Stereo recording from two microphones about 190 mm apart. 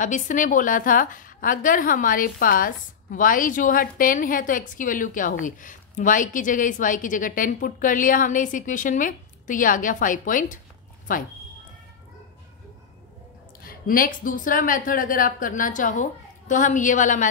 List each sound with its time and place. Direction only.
0.0 s a woman's voice: 40° left (ahead or behind)
13.7 s a woman's voice: 50° left (ahead or behind)